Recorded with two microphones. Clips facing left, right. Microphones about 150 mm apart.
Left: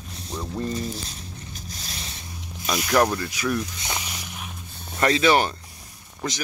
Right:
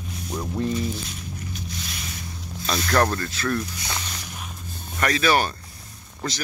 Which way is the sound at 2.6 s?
10° left (ahead or behind).